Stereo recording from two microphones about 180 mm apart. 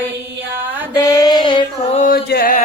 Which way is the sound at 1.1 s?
20° left (ahead or behind).